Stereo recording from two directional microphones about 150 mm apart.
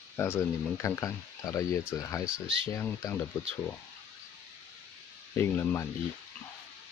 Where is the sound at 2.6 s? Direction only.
15° left (ahead or behind).